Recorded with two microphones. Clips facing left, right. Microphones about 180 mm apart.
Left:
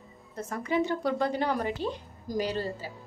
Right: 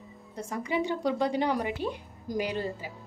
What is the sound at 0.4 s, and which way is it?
A woman's voice, 15° right (ahead or behind).